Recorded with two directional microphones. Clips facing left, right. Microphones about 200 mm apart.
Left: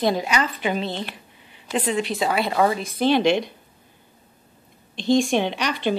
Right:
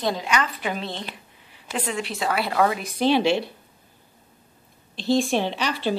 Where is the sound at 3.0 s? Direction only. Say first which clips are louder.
Left 1 dB; 5° right (ahead or behind).